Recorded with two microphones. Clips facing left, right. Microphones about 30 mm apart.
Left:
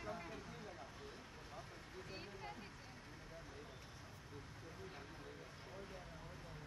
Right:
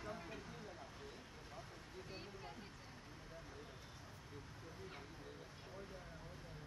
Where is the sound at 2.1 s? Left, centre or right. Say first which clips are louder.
Left 2 dB; centre.